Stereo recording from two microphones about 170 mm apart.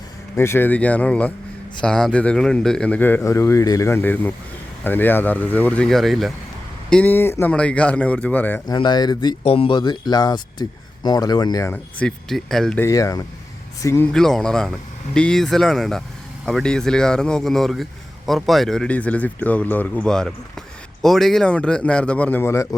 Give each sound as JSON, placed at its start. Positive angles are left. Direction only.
{"t": 0.3, "sound": "speech", "side_deg": 15}
{"t": 8.6, "sound": "speech", "side_deg": 25}
{"t": 9.4, "sound": "speech", "side_deg": 35}
{"t": 11.7, "sound": "speech", "side_deg": 5}
{"t": 12.8, "sound": "speech", "side_deg": 20}
{"t": 14.1, "sound": "speech", "side_deg": 5}